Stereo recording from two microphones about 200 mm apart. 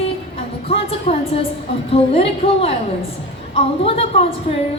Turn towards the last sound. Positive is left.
turn(degrees=30)  # may be behind; listen again after turning